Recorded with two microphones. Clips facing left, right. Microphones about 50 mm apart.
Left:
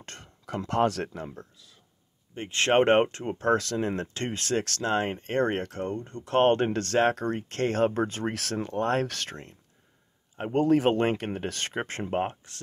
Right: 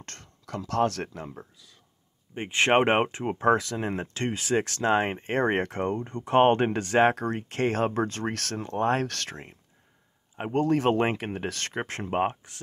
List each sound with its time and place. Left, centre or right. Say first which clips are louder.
0.0 s a sound: left 1 dB; centre
0.8 s speech: left 1 dB; centre
2.3 s speech: right 1 dB; centre
5.6 s speech: right 4 dB; right; by 9.4 s centre
10.5 s speech: left 1 dB; centre
11.0 s speech: even; centre
12.1 s speech: right 5 dB; centre